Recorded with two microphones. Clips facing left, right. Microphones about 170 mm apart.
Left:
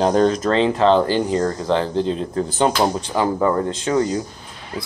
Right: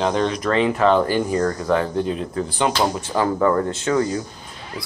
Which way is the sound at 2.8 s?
20° left (ahead or behind).